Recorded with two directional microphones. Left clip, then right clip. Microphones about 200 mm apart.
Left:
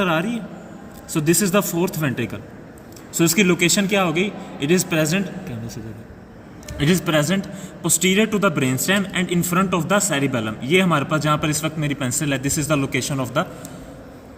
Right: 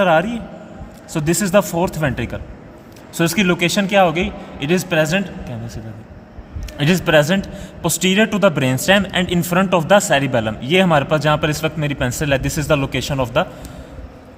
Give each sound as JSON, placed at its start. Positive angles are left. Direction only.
{"t": 0.0, "sound": "a man's voice", "side_deg": -35}